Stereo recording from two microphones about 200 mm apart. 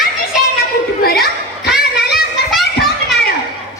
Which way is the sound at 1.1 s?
50° left (ahead or behind).